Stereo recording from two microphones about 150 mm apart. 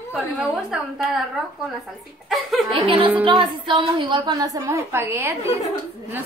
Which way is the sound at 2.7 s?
40° right (ahead or behind).